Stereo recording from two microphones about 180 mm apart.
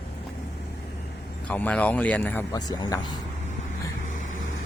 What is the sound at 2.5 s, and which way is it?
Speech, 20° left (ahead or behind).